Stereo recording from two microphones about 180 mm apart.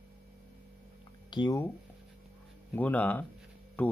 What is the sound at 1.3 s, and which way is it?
Speech, 25° left (ahead or behind).